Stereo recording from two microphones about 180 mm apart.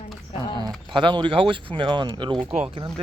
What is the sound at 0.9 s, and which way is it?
Speech, 25° right (ahead or behind).